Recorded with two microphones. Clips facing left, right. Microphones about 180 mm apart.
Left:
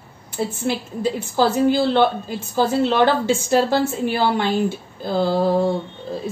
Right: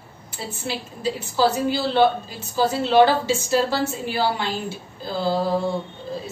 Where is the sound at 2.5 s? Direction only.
55° left (ahead or behind).